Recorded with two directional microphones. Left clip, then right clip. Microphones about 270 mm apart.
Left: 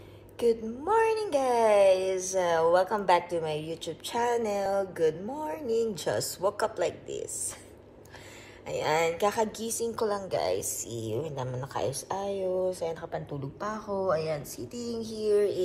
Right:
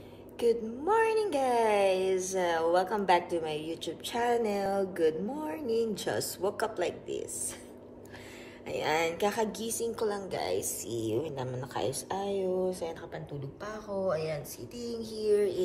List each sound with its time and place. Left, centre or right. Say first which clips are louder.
0.4 s a woman's voice: left 1 dB; centre
8.6 s a woman's voice: left 3 dB; centre
11.7 s a woman's voice: left 2 dB; centre
12.4 s a woman's voice: left 3 dB; centre